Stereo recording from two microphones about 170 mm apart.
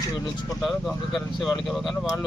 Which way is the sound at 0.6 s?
Centre (ahead or behind).